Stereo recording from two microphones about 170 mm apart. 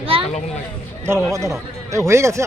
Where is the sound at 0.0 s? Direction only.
35° right (ahead or behind).